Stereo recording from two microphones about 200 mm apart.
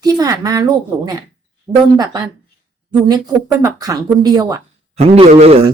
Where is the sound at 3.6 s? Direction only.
15° right (ahead or behind).